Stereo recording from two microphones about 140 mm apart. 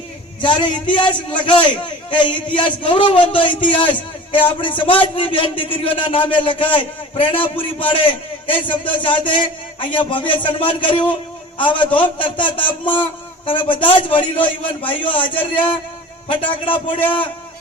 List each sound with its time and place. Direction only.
0.4 s a man's voice: 35° left (ahead or behind)
16.7 s a man's voice: 10° left (ahead or behind)